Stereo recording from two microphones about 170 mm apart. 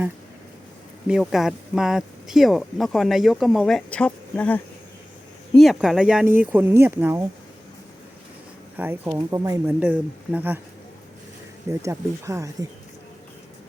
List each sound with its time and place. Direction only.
1.0 s speech: 5° right (ahead or behind)
8.7 s speech: 10° right (ahead or behind)
11.7 s speech: 15° right (ahead or behind)